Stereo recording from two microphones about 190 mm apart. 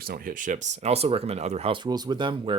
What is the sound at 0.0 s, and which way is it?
Speech, 50° right (ahead or behind).